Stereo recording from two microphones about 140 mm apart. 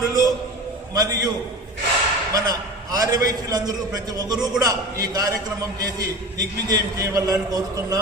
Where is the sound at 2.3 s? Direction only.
25° right (ahead or behind).